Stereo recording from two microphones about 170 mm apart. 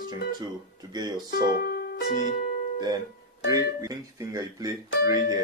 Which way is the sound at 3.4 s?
20° right (ahead or behind).